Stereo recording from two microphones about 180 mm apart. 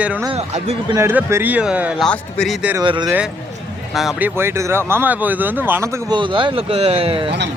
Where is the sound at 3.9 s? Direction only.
Centre (ahead or behind).